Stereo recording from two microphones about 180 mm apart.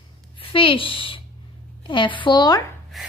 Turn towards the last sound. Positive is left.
turn(degrees=0)  # may be behind; listen again after turning